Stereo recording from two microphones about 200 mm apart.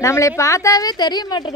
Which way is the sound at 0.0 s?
15° left (ahead or behind).